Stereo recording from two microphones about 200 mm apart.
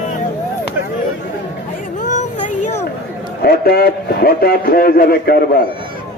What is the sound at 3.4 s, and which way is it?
A man's voice, 50° left (ahead or behind).